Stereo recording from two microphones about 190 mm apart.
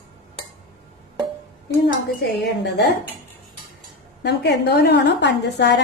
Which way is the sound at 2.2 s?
60° left (ahead or behind).